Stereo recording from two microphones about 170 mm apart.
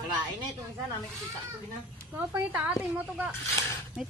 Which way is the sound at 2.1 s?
10° right (ahead or behind).